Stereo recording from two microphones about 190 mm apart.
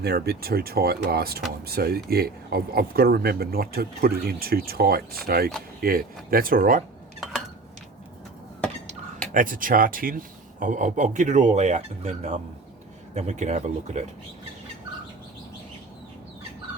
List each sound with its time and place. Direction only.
0.0 s speech: 55° right (ahead or behind)
9.3 s speech: 45° right (ahead or behind)